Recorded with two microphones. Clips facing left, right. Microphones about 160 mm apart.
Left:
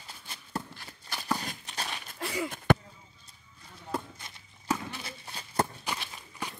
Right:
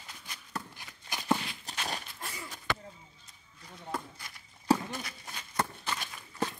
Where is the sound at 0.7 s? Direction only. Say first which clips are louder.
Even; 15° right (ahead or behind).